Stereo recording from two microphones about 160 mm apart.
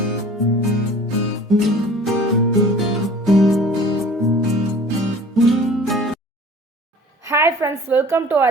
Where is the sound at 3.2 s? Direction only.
Centre (ahead or behind).